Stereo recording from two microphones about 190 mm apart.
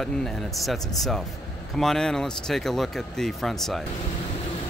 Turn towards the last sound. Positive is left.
turn(degrees=0)  # may be behind; listen again after turning